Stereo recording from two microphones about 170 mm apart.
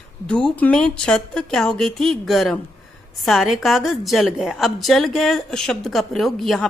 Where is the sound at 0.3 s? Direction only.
5° left (ahead or behind).